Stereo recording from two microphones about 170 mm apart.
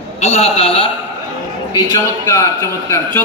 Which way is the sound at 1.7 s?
20° left (ahead or behind).